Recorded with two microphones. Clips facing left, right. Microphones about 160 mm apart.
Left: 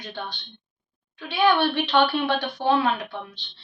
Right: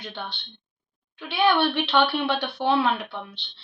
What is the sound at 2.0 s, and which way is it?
Speech, 45° left (ahead or behind).